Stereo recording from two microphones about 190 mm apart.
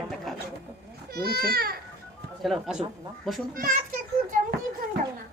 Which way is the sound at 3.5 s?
50° right (ahead or behind).